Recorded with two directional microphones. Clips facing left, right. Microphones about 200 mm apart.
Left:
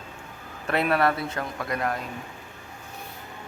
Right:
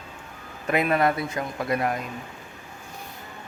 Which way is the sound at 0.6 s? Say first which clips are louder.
Right 1 dB; 10° right (ahead or behind).